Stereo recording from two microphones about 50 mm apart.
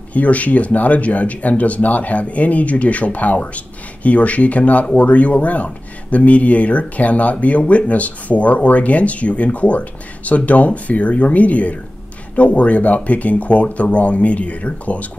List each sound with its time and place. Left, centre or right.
0.1 s speech: left